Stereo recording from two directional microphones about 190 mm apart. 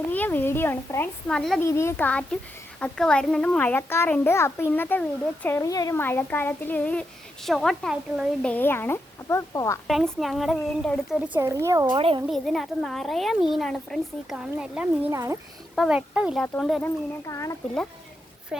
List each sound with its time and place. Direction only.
0.1 s a child's voice: 10° left (ahead or behind)
1.6 s a child's voice: 15° left (ahead or behind)
9.8 s speech: centre (ahead or behind)
11.3 s speech: 15° right (ahead or behind)
11.9 s a child's voice: 30° right (ahead or behind)
12.3 s speech: centre (ahead or behind)
15.7 s speech: centre (ahead or behind)
16.8 s a child's voice: 15° left (ahead or behind)